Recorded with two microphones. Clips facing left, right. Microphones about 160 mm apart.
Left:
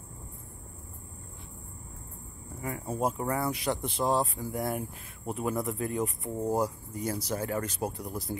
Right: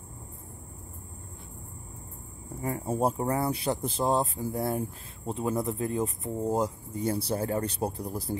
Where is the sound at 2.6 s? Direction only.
35° right (ahead or behind).